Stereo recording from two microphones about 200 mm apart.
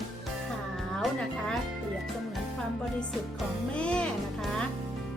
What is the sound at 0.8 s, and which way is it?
Music, centre (ahead or behind).